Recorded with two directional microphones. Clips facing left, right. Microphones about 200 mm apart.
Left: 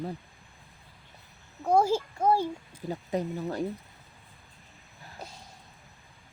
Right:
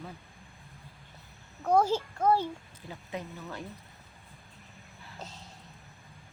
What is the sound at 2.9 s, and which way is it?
Speech, 40° left (ahead or behind).